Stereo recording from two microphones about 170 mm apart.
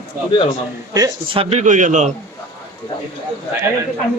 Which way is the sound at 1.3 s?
45° right (ahead or behind).